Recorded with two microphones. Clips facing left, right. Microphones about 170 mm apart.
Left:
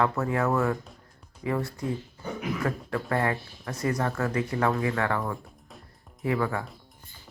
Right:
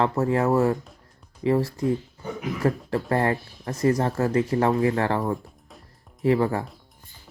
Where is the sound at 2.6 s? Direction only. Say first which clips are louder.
Right 9 dB; 35° right (ahead or behind).